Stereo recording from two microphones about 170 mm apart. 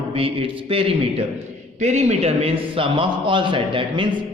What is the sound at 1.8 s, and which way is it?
A man's voice, 40° right (ahead or behind).